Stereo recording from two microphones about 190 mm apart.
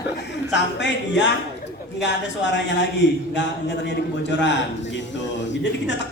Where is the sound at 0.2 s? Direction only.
65° left (ahead or behind).